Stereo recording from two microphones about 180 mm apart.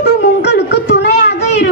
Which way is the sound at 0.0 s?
65° left (ahead or behind).